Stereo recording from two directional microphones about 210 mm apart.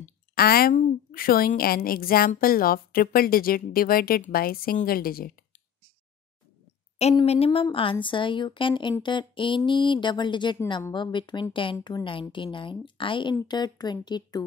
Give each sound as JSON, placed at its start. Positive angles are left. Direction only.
{"t": 0.0, "sound": "a woman's voice", "side_deg": 45}
{"t": 7.0, "sound": "speech", "side_deg": 30}